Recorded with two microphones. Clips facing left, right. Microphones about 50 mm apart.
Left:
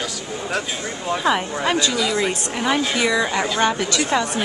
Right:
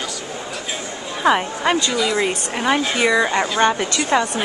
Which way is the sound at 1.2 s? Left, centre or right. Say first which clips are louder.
Right 4 dB; centre.